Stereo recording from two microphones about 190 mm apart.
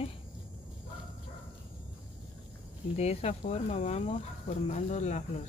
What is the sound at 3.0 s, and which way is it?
Speech, 35° left (ahead or behind).